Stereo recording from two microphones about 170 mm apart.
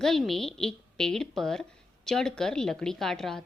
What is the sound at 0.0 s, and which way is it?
A woman's voice, centre (ahead or behind).